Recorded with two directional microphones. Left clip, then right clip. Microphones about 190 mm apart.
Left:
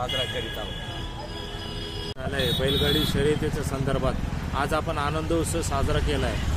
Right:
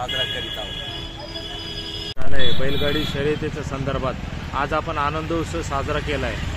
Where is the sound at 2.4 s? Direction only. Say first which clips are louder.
Right 1 dB; 30° right (ahead or behind).